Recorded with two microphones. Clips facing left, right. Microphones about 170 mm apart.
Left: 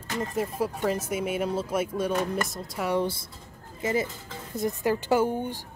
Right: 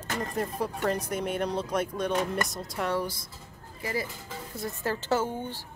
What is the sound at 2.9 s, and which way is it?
Speech, 25° left (ahead or behind).